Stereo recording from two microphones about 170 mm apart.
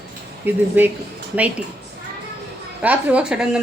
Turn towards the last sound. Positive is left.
turn(degrees=-5)  # may be behind; listen again after turning